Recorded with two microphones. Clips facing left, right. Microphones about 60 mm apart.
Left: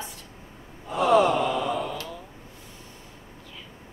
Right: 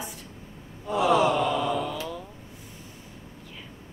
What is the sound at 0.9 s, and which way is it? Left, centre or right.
Sigh, centre.